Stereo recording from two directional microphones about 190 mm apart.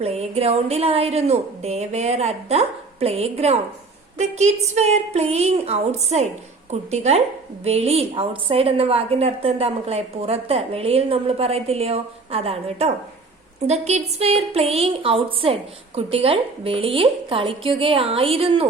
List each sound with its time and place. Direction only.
0.0 s a woman's voice: 35° right (ahead or behind)